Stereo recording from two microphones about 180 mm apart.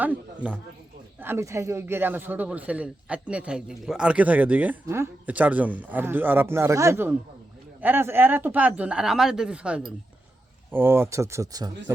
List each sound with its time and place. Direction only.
1.2 s speech: 15° right (ahead or behind)